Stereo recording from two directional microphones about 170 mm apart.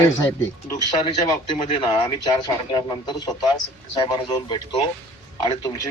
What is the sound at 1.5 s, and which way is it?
Speech, 30° left (ahead or behind).